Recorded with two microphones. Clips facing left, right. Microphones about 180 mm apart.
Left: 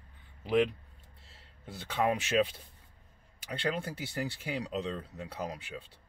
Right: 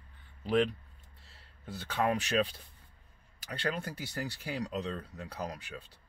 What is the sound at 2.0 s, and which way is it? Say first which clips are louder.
Speech: left 1 dB; 15° left (ahead or behind).